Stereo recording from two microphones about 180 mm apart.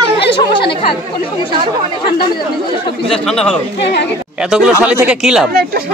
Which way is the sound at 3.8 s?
70° left (ahead or behind).